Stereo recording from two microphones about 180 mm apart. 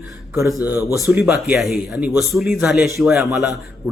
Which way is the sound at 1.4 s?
Centre (ahead or behind).